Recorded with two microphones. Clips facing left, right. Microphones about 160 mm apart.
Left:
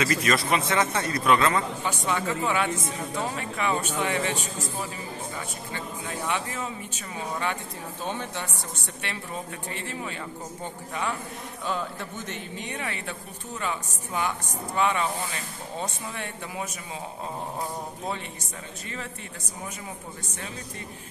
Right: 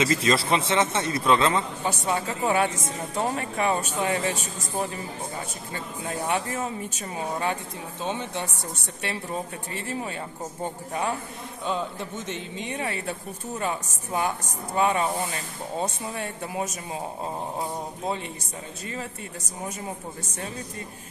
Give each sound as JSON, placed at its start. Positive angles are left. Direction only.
{"t": 0.0, "sound": "a man's voice", "side_deg": -25}
{"t": 1.9, "sound": "speech", "side_deg": -40}
{"t": 5.7, "sound": "speech", "side_deg": -40}
{"t": 8.0, "sound": "a man's voice", "side_deg": -25}
{"t": 9.8, "sound": "speech", "side_deg": -35}
{"t": 11.6, "sound": "a man's voice", "side_deg": -25}
{"t": 14.1, "sound": "speech", "side_deg": -35}
{"t": 17.6, "sound": "a man's voice", "side_deg": -25}